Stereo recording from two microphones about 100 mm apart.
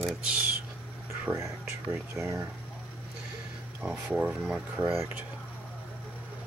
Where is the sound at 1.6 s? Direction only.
15° right (ahead or behind).